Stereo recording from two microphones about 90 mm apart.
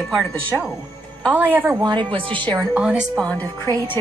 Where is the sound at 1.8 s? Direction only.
65° right (ahead or behind).